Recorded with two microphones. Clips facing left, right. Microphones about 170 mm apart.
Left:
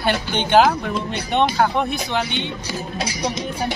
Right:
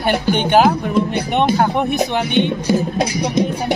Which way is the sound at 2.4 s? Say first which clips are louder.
Right 11 dB; 55° right (ahead or behind).